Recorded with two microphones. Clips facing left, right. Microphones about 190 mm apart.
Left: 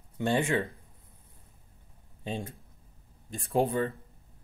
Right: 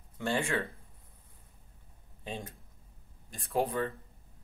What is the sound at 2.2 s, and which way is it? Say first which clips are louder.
Speech: left 5 dB; 25° left (ahead or behind).